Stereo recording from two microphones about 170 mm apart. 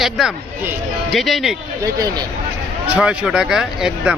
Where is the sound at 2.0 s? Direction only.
20° right (ahead or behind).